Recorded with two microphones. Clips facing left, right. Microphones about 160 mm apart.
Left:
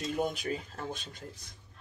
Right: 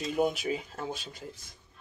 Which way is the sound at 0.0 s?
5° right (ahead or behind).